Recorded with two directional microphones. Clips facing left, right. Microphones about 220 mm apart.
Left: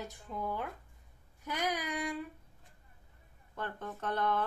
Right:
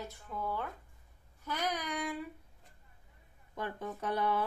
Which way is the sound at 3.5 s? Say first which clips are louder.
Right 2 dB; 10° right (ahead or behind).